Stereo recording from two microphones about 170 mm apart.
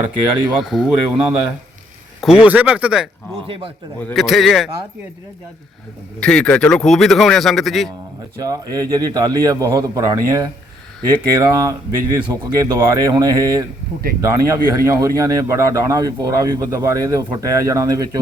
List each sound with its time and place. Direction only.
0.6 s speech: centre (ahead or behind)
4.1 s speech: centre (ahead or behind)
6.1 s speech: 5° left (ahead or behind)
8.4 s a man's voice: 20° right (ahead or behind)